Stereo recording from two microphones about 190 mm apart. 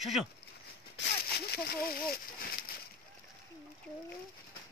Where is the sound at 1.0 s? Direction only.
70° left (ahead or behind).